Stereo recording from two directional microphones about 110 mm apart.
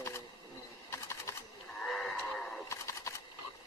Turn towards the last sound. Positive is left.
turn(degrees=25)  # may be behind; listen again after turning